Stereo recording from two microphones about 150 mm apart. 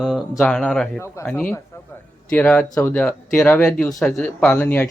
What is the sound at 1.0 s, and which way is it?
A man's voice, 15° left (ahead or behind).